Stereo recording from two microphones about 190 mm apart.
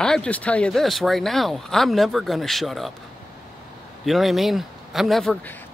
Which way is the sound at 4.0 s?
Centre (ahead or behind).